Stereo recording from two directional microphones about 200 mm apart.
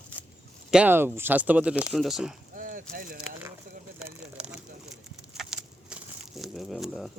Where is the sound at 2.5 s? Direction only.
40° right (ahead or behind).